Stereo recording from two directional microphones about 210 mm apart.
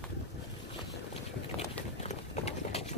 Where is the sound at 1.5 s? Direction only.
30° left (ahead or behind).